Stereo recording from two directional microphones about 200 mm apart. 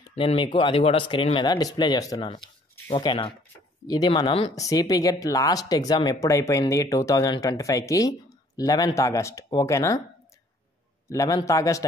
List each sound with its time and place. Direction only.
0.1 s speech: 30° left (ahead or behind)
11.1 s speech: 15° left (ahead or behind)